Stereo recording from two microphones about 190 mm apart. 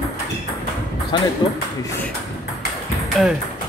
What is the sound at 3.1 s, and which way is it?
Speech, centre (ahead or behind).